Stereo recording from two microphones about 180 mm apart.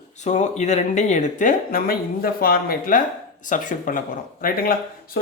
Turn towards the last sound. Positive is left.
turn(degrees=55)  # may be behind; listen again after turning